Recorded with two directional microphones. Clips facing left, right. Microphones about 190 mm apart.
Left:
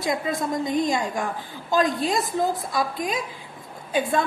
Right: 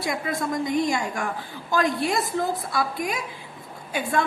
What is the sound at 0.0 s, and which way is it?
A woman's voice, 20° left (ahead or behind).